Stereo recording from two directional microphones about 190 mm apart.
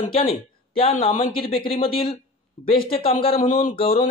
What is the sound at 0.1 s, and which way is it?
Speech, 30° left (ahead or behind).